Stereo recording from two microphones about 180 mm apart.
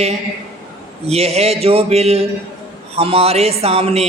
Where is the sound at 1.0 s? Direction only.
35° right (ahead or behind).